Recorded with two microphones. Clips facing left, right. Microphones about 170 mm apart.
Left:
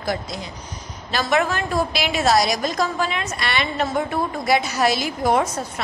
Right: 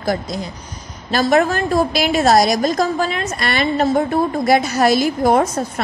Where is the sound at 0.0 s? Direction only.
45° right (ahead or behind).